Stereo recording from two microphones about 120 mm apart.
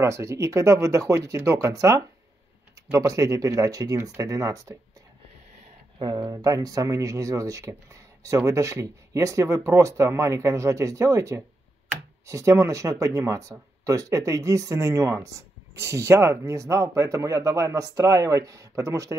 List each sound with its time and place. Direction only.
0.0 s speech: 25° right (ahead or behind)
5.9 s speech: 35° right (ahead or behind)